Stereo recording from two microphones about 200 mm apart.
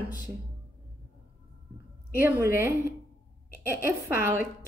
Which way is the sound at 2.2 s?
10° right (ahead or behind).